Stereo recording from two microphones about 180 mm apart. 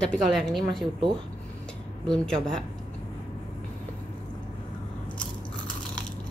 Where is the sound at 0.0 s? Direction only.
5° left (ahead or behind).